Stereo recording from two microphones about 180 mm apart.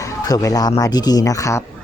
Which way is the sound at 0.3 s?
20° left (ahead or behind).